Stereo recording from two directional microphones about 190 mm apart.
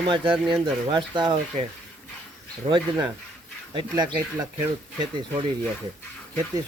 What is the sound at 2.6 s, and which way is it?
Speech, 25° right (ahead or behind).